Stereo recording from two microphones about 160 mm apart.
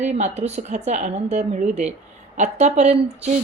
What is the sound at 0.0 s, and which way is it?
Speech, 45° right (ahead or behind).